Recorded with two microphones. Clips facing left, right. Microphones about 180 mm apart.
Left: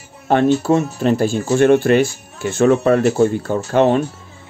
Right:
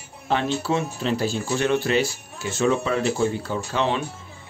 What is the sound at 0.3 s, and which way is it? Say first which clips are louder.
Speech: left 9 dB; 50° left (ahead or behind).